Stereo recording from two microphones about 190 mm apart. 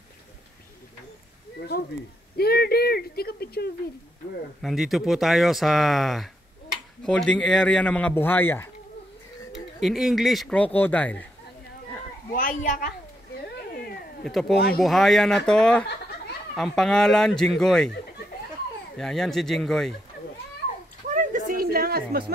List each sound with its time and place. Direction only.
1.7 s speech: 55° left (ahead or behind)
2.3 s a sound: 55° left (ahead or behind)
4.6 s speech: centre (ahead or behind)
9.5 s speech: centre (ahead or behind)
12.3 s a child's voice: 45° left (ahead or behind)
13.6 s cat: 55° left (ahead or behind)
14.2 s speech: centre (ahead or behind)
18.9 s speech: 5° left (ahead or behind)
21.1 s a sound: 45° right (ahead or behind)